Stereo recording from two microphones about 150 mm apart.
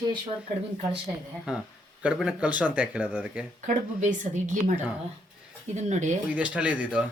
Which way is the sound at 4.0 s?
60° right (ahead or behind).